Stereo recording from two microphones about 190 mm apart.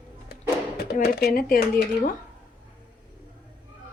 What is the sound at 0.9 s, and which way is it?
Speech, 55° left (ahead or behind).